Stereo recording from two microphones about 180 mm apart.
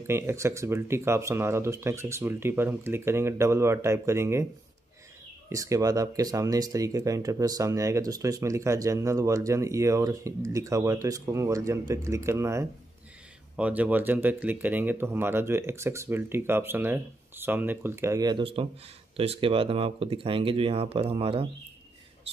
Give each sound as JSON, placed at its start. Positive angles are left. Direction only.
{"t": 0.0, "sound": "speech", "side_deg": -15}
{"t": 5.5, "sound": "speech", "side_deg": -20}